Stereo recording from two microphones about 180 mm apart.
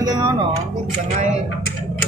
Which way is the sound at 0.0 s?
20° right (ahead or behind).